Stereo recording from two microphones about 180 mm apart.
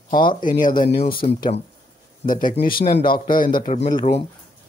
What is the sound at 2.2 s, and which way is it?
Speech, 50° left (ahead or behind).